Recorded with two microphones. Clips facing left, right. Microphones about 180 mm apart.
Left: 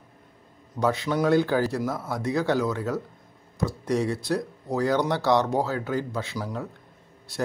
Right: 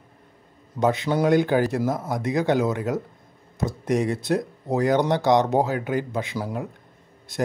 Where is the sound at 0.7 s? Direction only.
20° right (ahead or behind).